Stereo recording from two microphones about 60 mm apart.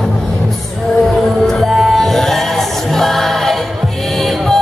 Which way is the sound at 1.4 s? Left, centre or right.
Centre.